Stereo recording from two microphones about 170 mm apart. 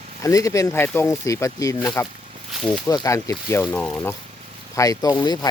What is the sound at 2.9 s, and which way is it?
Speech, 20° left (ahead or behind).